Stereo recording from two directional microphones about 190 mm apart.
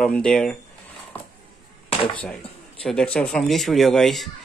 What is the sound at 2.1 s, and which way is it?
Speech, 5° left (ahead or behind).